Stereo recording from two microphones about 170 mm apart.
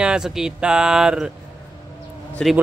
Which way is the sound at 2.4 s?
5° left (ahead or behind).